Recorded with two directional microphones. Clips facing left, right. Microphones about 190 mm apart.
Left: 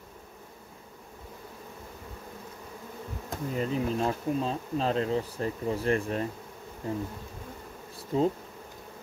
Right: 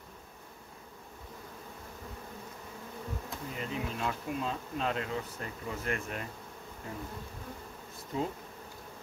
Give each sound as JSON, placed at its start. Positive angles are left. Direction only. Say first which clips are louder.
{"t": 3.3, "sound": "bee", "louder": "left 11 dB", "side_deg": 40}
{"t": 8.1, "sound": "bee", "louder": "left 8 dB", "side_deg": 30}